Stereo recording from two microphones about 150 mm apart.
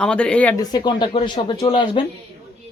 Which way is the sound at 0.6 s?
30° left (ahead or behind).